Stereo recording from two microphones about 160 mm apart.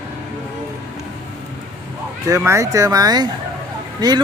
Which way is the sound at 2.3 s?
15° right (ahead or behind).